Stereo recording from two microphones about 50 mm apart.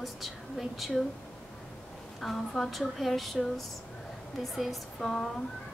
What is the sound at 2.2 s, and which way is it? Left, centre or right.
A woman's voice, centre.